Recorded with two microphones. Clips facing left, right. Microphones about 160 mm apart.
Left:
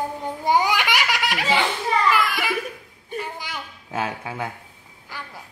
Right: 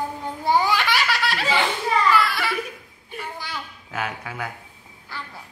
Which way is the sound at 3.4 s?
25° left (ahead or behind).